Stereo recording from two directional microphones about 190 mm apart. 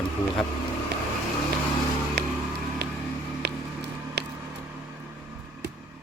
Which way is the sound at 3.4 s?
60° right (ahead or behind).